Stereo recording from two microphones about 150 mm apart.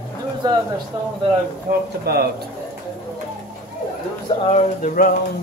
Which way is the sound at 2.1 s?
90° right.